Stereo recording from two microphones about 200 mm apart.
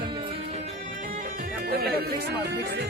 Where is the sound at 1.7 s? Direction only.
50° right (ahead or behind).